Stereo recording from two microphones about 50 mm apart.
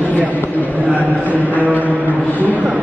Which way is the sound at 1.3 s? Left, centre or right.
Right.